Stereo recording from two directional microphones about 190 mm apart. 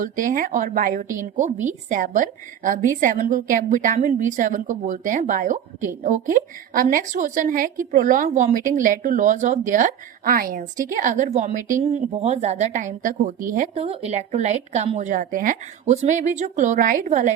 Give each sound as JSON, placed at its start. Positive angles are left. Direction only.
{"t": 0.0, "sound": "a woman's voice", "side_deg": -45}
{"t": 13.7, "sound": "a woman's voice", "side_deg": -30}